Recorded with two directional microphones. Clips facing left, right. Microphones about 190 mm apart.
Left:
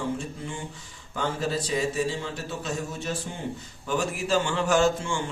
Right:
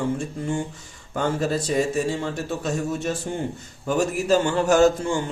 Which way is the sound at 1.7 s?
50° right (ahead or behind).